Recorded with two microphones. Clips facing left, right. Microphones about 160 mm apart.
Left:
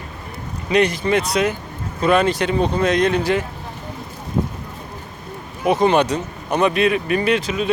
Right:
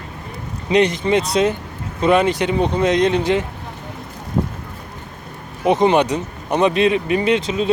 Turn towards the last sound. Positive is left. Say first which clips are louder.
# right 1 dB
turn(degrees=-25)  # may be behind; listen again after turning